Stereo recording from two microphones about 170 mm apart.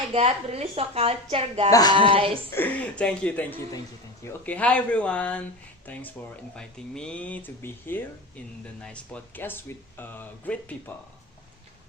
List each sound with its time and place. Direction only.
0.1 s a woman's voice: 35° right (ahead or behind)
2.5 s speech: 10° left (ahead or behind)